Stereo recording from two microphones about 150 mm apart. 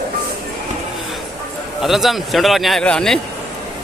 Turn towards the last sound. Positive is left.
turn(degrees=5)  # may be behind; listen again after turning